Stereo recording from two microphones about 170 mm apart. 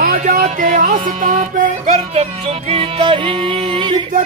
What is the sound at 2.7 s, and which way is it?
Music, 30° right (ahead or behind).